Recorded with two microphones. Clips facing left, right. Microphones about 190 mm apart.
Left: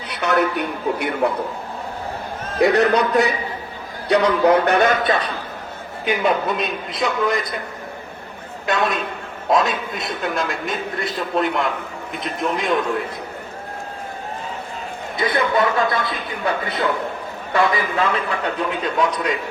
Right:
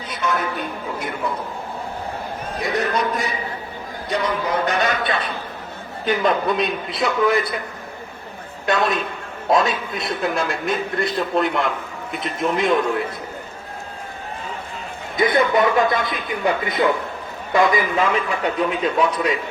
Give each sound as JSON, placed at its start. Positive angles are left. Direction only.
{"t": 0.1, "sound": "a man's voice", "side_deg": 70}
{"t": 2.6, "sound": "a man's voice", "side_deg": 70}
{"t": 6.1, "sound": "a man's voice", "side_deg": 5}
{"t": 8.6, "sound": "a man's voice", "side_deg": 0}
{"t": 15.3, "sound": "a man's voice", "side_deg": -20}